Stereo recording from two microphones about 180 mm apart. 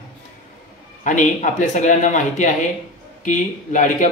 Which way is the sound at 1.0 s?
45° left (ahead or behind).